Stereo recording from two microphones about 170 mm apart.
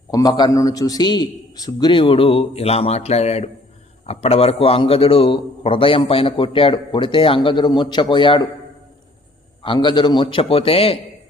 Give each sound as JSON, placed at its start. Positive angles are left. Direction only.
{"t": 0.1, "sound": "a man's voice", "side_deg": 20}
{"t": 9.6, "sound": "a man's voice", "side_deg": 25}